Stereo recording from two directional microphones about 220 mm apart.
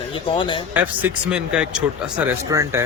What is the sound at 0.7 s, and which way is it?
A man's voice, 5° right (ahead or behind).